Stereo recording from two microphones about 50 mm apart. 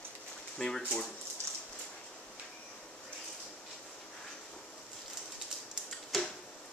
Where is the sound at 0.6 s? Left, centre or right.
Centre.